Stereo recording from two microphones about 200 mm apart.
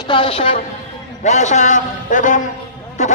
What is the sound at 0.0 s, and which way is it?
A man's voice, 25° left (ahead or behind).